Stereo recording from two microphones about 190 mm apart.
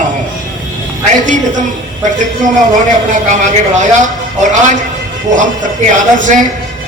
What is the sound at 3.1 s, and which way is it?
A man's voice, 40° right (ahead or behind).